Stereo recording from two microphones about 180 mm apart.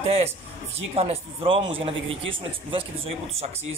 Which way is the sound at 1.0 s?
30° right (ahead or behind).